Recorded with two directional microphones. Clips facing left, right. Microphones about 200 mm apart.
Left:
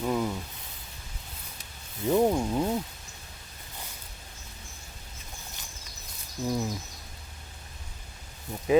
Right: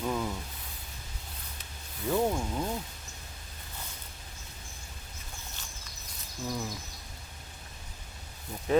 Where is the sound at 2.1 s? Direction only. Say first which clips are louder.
Left 5 dB; 20° left (ahead or behind).